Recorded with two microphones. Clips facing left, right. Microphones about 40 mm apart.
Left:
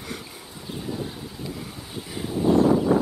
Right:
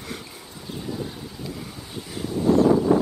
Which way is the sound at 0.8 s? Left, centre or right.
Centre.